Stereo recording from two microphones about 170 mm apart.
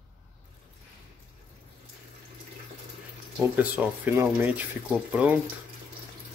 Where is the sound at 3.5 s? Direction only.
10° right (ahead or behind).